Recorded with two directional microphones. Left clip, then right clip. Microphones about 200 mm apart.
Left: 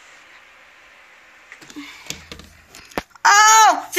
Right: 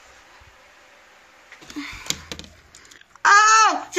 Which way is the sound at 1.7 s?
25° right (ahead or behind).